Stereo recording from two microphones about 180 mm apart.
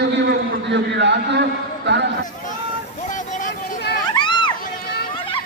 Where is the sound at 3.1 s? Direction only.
45° left (ahead or behind).